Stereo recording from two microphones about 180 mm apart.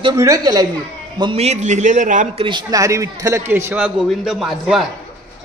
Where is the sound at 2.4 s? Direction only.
20° right (ahead or behind); by 4.8 s centre (ahead or behind).